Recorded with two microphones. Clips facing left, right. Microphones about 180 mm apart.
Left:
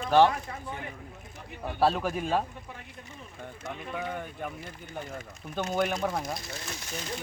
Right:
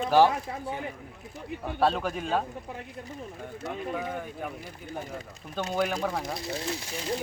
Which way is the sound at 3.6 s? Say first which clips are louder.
Right 3 dB; 5° right (ahead or behind).